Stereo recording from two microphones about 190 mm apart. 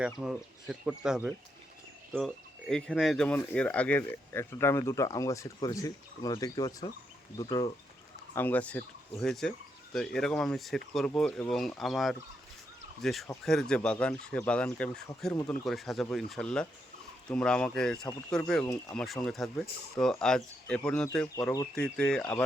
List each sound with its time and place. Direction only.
0.0 s speech: 5° right (ahead or behind); by 7.7 s 20° left (ahead or behind)
8.4 s speech: 10° left (ahead or behind)